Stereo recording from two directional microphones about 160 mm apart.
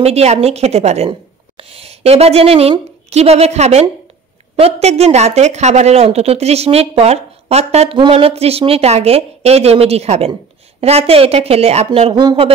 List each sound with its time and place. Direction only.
0.0 s a woman's voice: 40° right (ahead or behind)
12.1 s speech: 25° right (ahead or behind)